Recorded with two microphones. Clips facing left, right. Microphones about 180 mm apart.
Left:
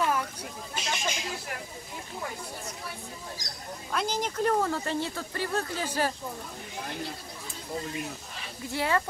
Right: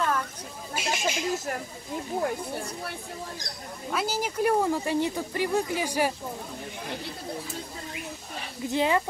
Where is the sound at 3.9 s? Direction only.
5° right (ahead or behind).